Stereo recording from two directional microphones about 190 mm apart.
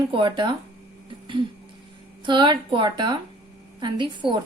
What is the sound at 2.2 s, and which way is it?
A woman's voice, 25° right (ahead or behind).